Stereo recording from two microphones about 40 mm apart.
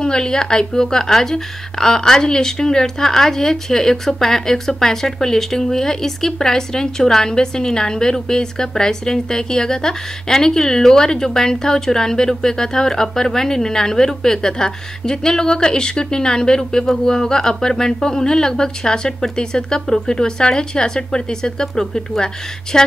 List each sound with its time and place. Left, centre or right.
0.0 s speech: centre